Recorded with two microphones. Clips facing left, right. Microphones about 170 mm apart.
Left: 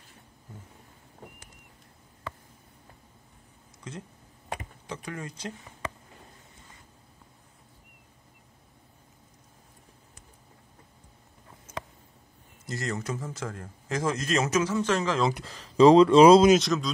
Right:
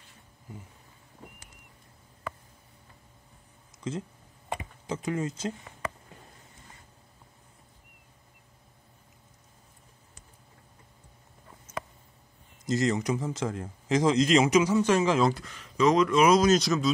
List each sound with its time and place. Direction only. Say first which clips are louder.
4.8 s speech: right 8 dB; 25° right (ahead or behind)
12.6 s a man's voice: right 7 dB; 20° right (ahead or behind)
15.4 s speech: left 7 dB; 30° left (ahead or behind)
16.5 s speech: even; centre (ahead or behind)